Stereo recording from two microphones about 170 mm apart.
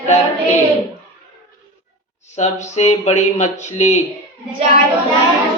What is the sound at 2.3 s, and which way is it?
Speech, 40° left (ahead or behind).